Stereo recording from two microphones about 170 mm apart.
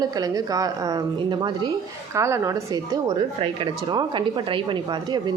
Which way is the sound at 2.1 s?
15° right (ahead or behind).